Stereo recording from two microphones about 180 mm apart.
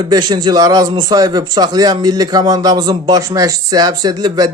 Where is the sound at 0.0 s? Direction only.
20° right (ahead or behind).